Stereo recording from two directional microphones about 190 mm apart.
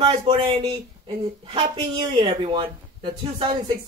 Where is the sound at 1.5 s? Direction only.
25° right (ahead or behind).